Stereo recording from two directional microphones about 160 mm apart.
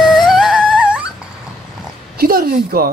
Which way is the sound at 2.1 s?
70° right (ahead or behind).